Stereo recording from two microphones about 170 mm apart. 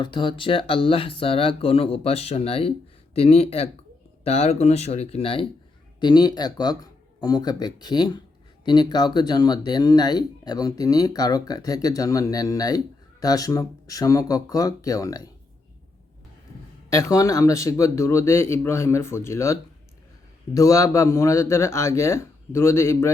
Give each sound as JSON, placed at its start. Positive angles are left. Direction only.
{"t": 0.0, "sound": "speech", "side_deg": 30}
{"t": 16.9, "sound": "speech", "side_deg": 20}